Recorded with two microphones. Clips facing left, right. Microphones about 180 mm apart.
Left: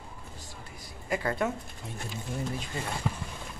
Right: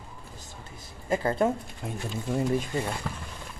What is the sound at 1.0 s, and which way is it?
Speech, 30° right (ahead or behind).